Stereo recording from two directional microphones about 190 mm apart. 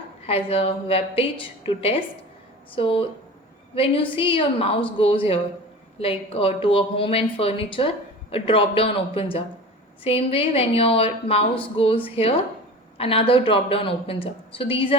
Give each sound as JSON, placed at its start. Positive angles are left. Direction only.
{"t": 0.3, "sound": "a woman's voice", "side_deg": 30}